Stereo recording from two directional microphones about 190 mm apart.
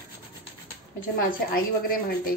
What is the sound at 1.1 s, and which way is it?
A woman's voice, 50° left (ahead or behind).